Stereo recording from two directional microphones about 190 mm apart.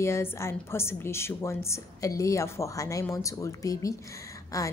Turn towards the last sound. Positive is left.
turn(degrees=15)  # may be behind; listen again after turning